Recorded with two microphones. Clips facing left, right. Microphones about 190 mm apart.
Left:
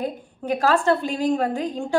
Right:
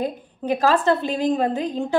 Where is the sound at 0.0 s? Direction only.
20° right (ahead or behind).